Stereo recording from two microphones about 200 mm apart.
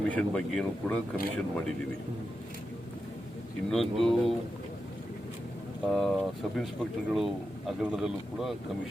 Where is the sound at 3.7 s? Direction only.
Centre (ahead or behind).